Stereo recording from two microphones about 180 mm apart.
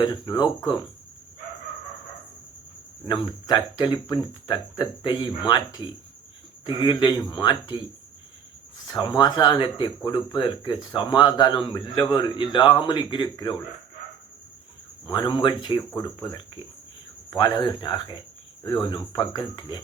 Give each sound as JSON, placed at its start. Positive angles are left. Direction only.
{"t": 0.0, "sound": "speech", "side_deg": 25}
{"t": 3.1, "sound": "speech", "side_deg": 25}
{"t": 6.8, "sound": "speech", "side_deg": 25}
{"t": 8.9, "sound": "speech", "side_deg": 25}
{"t": 15.0, "sound": "speech", "side_deg": 25}